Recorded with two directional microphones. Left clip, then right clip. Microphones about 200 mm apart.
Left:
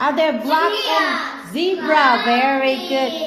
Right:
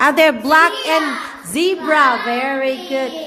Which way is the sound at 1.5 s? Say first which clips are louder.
Right 2 dB; 35° right (ahead or behind).